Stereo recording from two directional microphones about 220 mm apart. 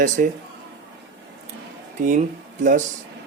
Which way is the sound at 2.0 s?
35° right (ahead or behind).